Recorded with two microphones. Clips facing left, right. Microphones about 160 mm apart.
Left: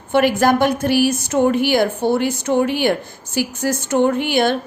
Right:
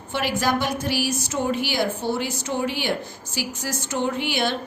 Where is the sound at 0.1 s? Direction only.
55° left (ahead or behind).